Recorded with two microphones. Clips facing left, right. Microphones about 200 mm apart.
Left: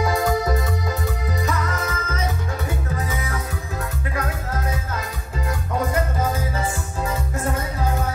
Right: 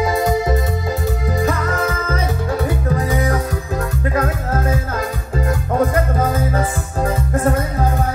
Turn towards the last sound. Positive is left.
turn(degrees=-50)  # may be behind; listen again after turning